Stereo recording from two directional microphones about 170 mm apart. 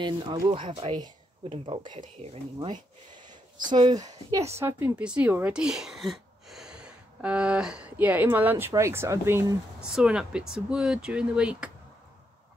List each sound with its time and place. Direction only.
0.0 s speech: 25° right (ahead or behind)
2.7 s speech: 25° right (ahead or behind)
4.6 s speech: 10° right (ahead or behind)
9.8 s speech: 5° right (ahead or behind)